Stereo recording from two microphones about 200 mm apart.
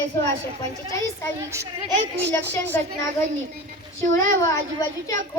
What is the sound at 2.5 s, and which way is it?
Speech, 10° left (ahead or behind).